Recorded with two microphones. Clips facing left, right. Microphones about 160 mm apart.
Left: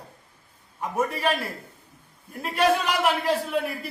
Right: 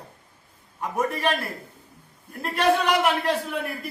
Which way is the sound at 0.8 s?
Centre (ahead or behind).